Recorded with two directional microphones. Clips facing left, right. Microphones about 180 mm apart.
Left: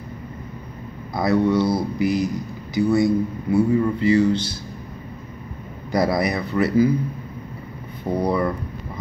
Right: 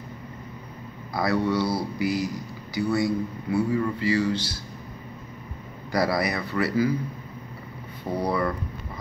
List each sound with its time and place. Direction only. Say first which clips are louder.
1.1 s speech: left 5 dB; 20° left (ahead or behind)
5.9 s speech: left 4 dB; 20° left (ahead or behind)
8.2 s speech: left 4 dB; 20° left (ahead or behind)